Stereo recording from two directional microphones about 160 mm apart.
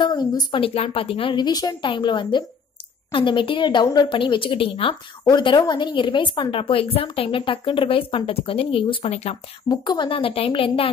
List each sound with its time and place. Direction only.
0.0 s a woman's voice: 25° left (ahead or behind)
9.7 s a woman's voice: 30° left (ahead or behind)